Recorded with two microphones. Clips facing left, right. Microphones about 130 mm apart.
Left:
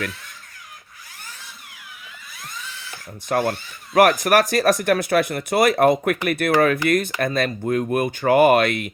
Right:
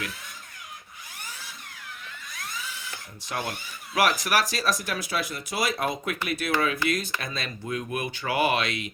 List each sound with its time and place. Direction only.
3.2 s speech: 50° left (ahead or behind)